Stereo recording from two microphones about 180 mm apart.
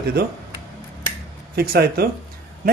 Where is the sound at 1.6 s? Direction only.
60° right (ahead or behind).